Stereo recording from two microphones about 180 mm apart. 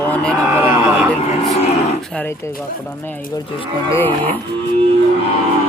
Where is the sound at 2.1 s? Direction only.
15° left (ahead or behind).